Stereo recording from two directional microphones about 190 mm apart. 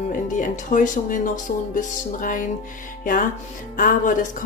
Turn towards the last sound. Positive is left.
turn(degrees=45)  # may be behind; listen again after turning